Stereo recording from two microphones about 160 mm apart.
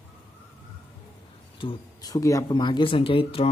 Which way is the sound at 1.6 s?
25° left (ahead or behind).